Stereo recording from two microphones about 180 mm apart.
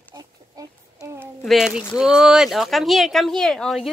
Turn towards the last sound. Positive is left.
turn(degrees=0)  # may be behind; listen again after turning